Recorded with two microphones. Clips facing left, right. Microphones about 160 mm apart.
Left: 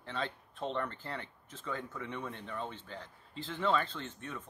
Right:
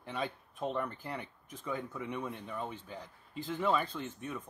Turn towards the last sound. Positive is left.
turn(degrees=-10)  # may be behind; listen again after turning